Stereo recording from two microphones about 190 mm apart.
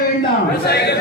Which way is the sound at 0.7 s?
60° left (ahead or behind).